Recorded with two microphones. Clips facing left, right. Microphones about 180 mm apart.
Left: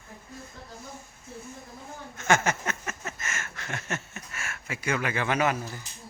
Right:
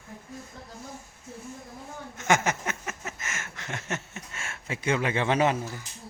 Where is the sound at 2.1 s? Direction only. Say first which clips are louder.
Even; 15° right (ahead or behind).